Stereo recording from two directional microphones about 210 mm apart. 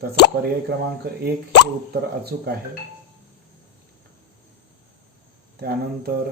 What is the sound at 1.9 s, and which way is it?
Speech, 50° right (ahead or behind).